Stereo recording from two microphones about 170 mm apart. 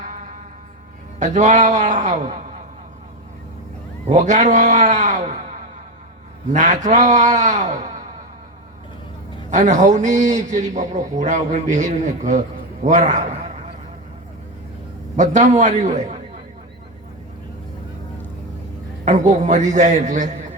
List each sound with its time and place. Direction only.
0.0 s music: 50° right (ahead or behind)
1.2 s a man's voice: 45° right (ahead or behind)
4.0 s a man's voice: 45° right (ahead or behind)
9.5 s a man's voice: 45° right (ahead or behind)
15.1 s a man's voice: 45° right (ahead or behind)
19.0 s a man's voice: 45° right (ahead or behind)